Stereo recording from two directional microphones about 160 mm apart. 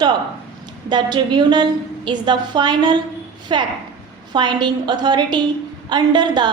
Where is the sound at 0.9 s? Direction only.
30° right (ahead or behind).